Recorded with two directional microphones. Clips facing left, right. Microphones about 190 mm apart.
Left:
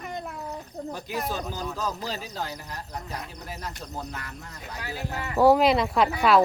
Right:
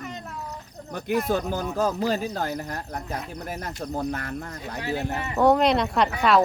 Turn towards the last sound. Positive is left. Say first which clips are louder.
# even
turn(degrees=0)  # may be behind; listen again after turning